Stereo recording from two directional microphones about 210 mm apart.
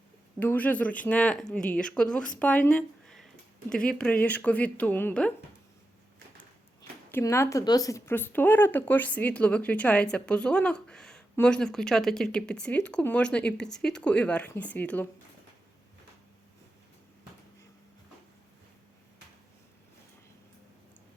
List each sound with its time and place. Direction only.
0.3 s speech: 10° left (ahead or behind)
7.1 s speech: 10° left (ahead or behind)